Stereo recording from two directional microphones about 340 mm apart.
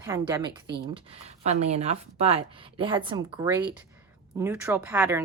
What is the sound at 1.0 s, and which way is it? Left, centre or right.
A woman's voice, centre.